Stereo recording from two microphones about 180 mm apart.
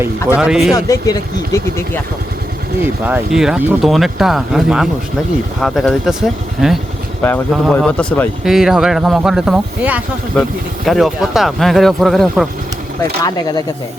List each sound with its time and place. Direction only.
0.3 s speech: 5° right (ahead or behind)
0.7 s speech: 20° left (ahead or behind)
2.8 s speech: 10° right (ahead or behind); by 8.3 s 10° left (ahead or behind)
8.4 s speech: centre (ahead or behind)
13.2 s speech: 20° left (ahead or behind)